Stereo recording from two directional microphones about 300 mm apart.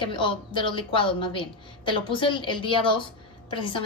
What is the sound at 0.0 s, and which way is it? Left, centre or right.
A woman's voice, centre.